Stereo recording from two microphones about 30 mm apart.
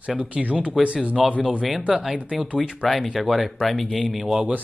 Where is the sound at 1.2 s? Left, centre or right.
Centre.